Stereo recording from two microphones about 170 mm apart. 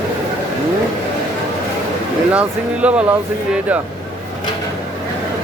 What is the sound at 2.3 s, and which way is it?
Speech, 10° right (ahead or behind).